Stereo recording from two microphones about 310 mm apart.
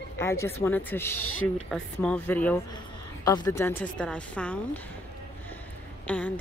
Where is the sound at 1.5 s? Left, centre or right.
Centre.